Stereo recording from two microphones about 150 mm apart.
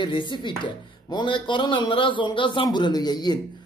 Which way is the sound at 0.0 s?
30° left (ahead or behind).